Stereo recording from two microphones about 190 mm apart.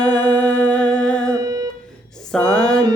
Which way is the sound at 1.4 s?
20° right (ahead or behind).